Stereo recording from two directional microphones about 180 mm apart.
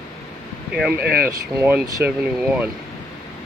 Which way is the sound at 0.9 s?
60° right (ahead or behind).